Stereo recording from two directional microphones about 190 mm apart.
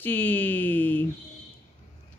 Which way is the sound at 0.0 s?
10° left (ahead or behind).